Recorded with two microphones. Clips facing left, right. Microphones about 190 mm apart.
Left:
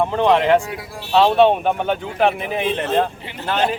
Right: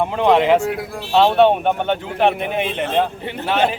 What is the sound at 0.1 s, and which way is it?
Speech, 5° right (ahead or behind).